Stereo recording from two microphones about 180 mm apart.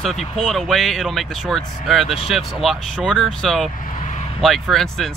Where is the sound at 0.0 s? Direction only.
Centre (ahead or behind).